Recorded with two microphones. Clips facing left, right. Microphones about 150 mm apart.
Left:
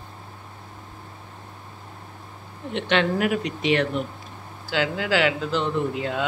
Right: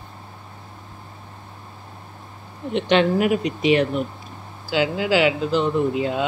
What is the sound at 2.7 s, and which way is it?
Speech, 15° right (ahead or behind).